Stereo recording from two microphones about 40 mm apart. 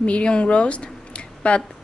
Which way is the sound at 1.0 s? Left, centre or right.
Left.